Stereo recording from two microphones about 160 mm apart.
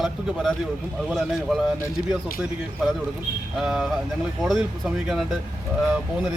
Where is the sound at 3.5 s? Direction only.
5° right (ahead or behind).